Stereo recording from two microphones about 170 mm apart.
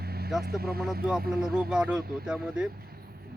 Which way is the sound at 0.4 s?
65° right (ahead or behind).